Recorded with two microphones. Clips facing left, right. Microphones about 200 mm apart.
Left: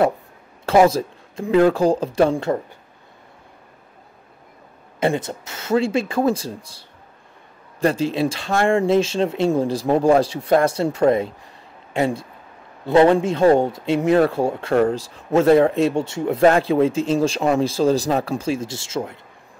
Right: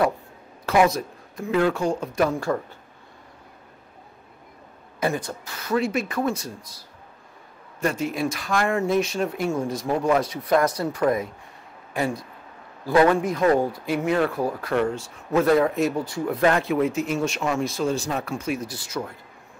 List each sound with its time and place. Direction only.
0.7 s speech: 30° left (ahead or behind)
5.0 s speech: 25° left (ahead or behind)